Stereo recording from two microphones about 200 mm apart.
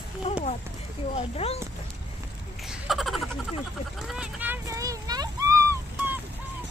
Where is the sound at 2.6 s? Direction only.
Centre (ahead or behind).